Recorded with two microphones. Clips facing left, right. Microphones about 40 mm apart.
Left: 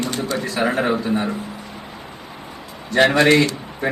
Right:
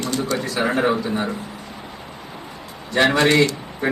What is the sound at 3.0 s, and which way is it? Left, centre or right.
Speech, left.